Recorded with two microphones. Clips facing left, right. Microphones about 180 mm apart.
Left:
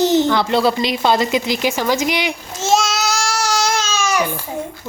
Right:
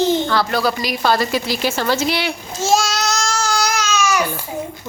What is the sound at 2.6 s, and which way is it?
Babbling, centre (ahead or behind).